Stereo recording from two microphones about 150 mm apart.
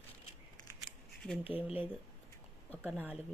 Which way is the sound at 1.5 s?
10° right (ahead or behind).